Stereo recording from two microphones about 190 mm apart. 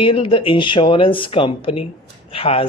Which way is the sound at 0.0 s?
25° left (ahead or behind).